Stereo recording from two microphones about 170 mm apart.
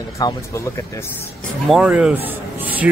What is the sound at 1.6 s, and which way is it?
Speech, centre (ahead or behind).